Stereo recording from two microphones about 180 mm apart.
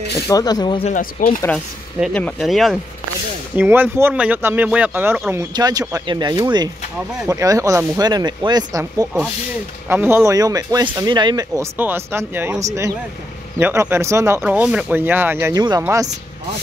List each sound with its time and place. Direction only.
0.3 s speech: 20° left (ahead or behind)
0.8 s speech: 50° left (ahead or behind)
2.1 s speech: 5° left (ahead or behind)
3.5 s speech: 10° right (ahead or behind)